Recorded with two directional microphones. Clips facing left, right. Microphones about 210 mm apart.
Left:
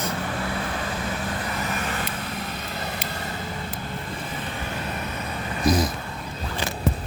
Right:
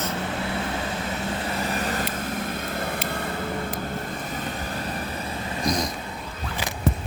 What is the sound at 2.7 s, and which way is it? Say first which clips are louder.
Vehicle: right 3 dB; 50° right (ahead or behind).